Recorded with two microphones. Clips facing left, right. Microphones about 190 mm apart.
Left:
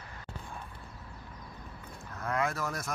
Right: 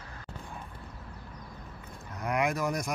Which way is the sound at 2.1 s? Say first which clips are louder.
Right 3 dB; 15° right (ahead or behind).